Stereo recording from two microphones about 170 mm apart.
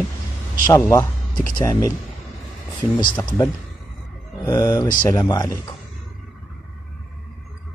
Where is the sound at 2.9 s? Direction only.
20° left (ahead or behind).